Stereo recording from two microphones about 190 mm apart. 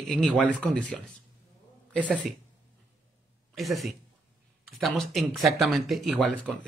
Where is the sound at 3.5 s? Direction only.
Centre (ahead or behind).